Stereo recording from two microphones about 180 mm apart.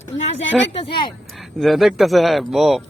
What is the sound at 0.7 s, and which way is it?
Speech, 30° left (ahead or behind).